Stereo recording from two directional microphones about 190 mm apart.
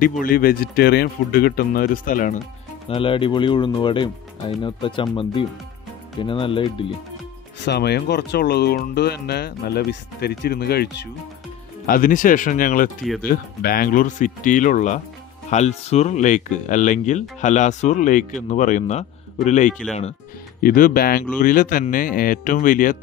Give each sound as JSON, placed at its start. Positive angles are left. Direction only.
{"t": 0.2, "sound": "speech", "side_deg": 50}
{"t": 2.9, "sound": "speech", "side_deg": 25}
{"t": 7.6, "sound": "speech", "side_deg": 60}
{"t": 11.8, "sound": "speech", "side_deg": 45}
{"t": 20.6, "sound": "speech", "side_deg": 45}